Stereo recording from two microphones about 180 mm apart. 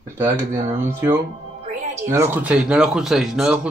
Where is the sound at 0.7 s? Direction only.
15° right (ahead or behind).